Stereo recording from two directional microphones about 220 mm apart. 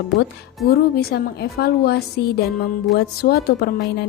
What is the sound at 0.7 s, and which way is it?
A woman's voice, 45° left (ahead or behind).